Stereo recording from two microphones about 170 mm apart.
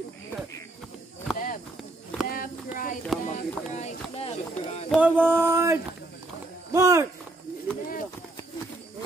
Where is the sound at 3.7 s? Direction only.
40° left (ahead or behind).